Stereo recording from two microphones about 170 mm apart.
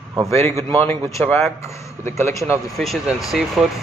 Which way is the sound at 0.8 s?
15° left (ahead or behind).